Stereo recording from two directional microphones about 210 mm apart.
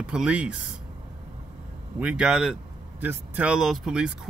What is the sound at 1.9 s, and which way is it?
Speech, 5° right (ahead or behind).